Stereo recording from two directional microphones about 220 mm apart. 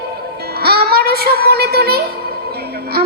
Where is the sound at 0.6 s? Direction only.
45° right (ahead or behind).